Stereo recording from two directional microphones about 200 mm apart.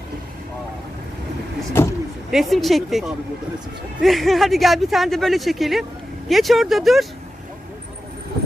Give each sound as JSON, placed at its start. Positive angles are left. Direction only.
{"t": 1.8, "sound": "vehicle", "side_deg": 10}
{"t": 2.3, "sound": "speech", "side_deg": 0}